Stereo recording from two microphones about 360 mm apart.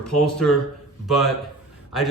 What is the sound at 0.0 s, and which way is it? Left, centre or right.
Speech, centre.